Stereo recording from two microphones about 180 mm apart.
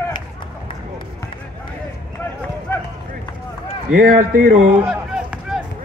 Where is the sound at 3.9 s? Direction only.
50° right (ahead or behind).